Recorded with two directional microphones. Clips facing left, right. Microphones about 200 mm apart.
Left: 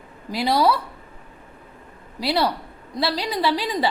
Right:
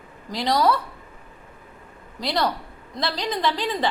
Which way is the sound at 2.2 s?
10° left (ahead or behind).